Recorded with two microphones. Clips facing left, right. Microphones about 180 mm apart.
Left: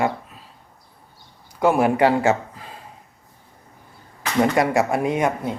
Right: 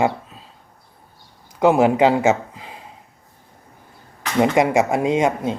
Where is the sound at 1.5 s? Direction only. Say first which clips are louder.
Right 3 dB; 20° right (ahead or behind).